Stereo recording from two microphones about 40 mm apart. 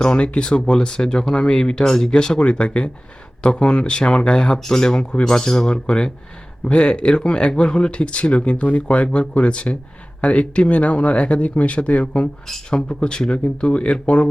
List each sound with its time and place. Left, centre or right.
0.0 s speech: left
12.7 s speech: left